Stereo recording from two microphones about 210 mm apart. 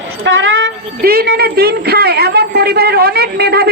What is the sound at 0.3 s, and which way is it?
Speech, 60° right (ahead or behind).